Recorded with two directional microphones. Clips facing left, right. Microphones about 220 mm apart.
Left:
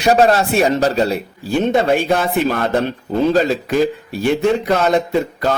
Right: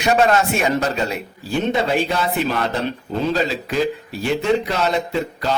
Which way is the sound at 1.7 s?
50° left (ahead or behind).